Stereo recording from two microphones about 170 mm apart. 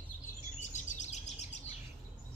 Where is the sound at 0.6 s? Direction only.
45° left (ahead or behind).